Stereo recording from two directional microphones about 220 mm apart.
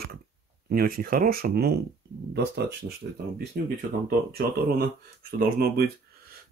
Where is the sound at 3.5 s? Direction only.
45° right (ahead or behind).